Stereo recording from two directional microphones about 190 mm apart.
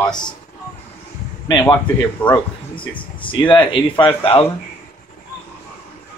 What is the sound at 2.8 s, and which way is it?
Speech, 25° left (ahead or behind).